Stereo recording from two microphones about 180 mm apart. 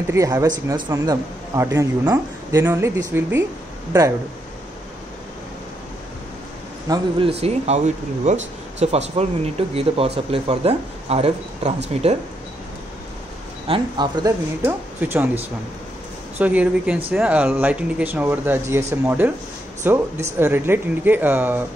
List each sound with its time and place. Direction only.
0.1 s a man's voice: 15° right (ahead or behind)
6.9 s speech: 30° right (ahead or behind)
13.7 s speech: 25° right (ahead or behind)
14.6 s a man's voice: 10° right (ahead or behind)
16.3 s a man's voice: 10° right (ahead or behind)